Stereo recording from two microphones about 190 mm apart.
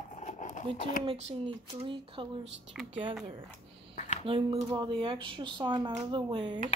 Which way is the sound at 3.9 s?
35° left (ahead or behind).